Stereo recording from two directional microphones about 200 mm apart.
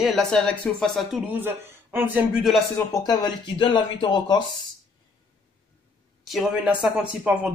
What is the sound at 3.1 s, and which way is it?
Speech, 20° left (ahead or behind).